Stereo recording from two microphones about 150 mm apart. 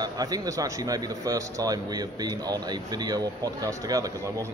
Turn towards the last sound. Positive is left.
turn(degrees=-25)  # may be behind; listen again after turning